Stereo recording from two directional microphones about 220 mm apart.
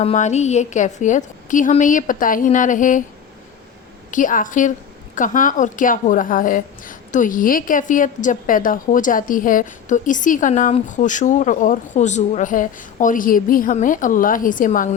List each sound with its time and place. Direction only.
0.0 s a woman's voice: 30° left (ahead or behind)
4.1 s a woman's voice: 35° left (ahead or behind)